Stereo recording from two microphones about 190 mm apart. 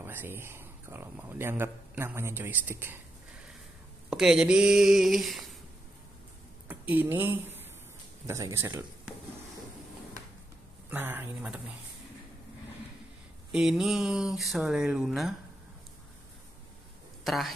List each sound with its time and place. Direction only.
0.0 s speech: 10° right (ahead or behind)
4.1 s speech: 5° right (ahead or behind)
6.7 s speech: 10° right (ahead or behind)
10.9 s speech: 10° right (ahead or behind)
13.5 s speech: centre (ahead or behind)
17.2 s speech: centre (ahead or behind)